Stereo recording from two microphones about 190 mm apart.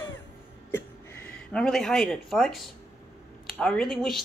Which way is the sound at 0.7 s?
10° left (ahead or behind).